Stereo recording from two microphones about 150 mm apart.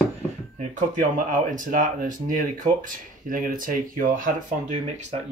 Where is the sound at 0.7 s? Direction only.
55° right (ahead or behind).